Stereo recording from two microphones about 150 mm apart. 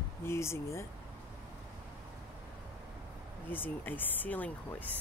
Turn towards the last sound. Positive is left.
turn(degrees=10)  # may be behind; listen again after turning